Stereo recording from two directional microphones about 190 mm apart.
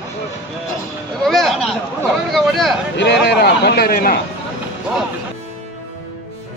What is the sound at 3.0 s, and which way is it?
A man's voice, 65° left (ahead or behind).